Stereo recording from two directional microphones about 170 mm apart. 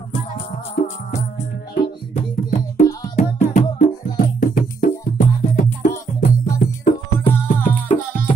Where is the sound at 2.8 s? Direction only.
20° left (ahead or behind).